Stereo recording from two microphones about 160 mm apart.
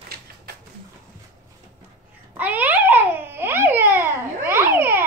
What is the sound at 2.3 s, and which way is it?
Babbling, 10° right (ahead or behind).